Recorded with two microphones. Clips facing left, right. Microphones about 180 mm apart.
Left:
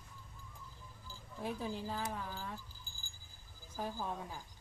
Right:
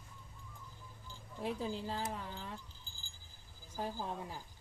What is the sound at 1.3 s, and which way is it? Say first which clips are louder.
Speech: right 2 dB; 30° right (ahead or behind).